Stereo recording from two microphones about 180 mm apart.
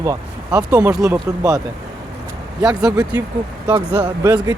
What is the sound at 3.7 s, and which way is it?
Speech, 10° right (ahead or behind).